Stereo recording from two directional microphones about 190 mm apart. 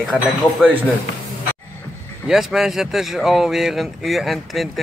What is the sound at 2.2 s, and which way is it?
Speech, centre (ahead or behind).